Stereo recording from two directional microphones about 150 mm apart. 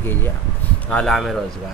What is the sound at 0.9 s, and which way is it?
Speech, 5° left (ahead or behind).